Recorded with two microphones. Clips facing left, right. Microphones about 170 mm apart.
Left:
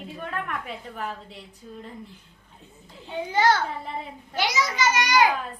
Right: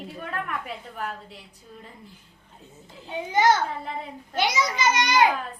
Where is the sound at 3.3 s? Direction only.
20° right (ahead or behind).